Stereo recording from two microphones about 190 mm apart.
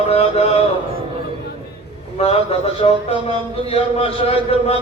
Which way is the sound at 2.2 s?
30° left (ahead or behind).